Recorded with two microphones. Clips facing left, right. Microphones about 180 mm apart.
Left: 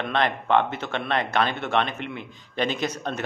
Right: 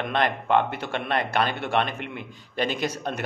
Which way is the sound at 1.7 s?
45° right (ahead or behind).